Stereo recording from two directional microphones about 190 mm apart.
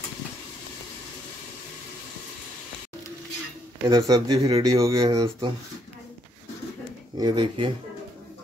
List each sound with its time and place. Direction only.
3.8 s speech: 25° right (ahead or behind)
7.2 s speech: 25° right (ahead or behind)